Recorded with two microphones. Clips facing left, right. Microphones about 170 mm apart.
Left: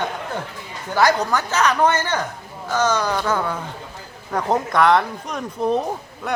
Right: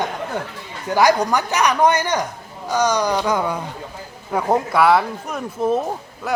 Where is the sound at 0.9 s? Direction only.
15° right (ahead or behind).